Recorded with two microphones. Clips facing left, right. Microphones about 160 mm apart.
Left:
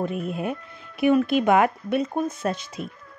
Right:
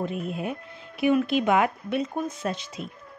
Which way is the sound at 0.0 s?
50° left (ahead or behind).